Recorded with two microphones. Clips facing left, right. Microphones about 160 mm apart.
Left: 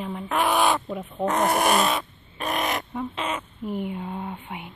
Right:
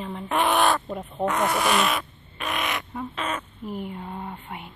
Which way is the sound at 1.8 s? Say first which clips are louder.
Left 1 dB; 35° left (ahead or behind).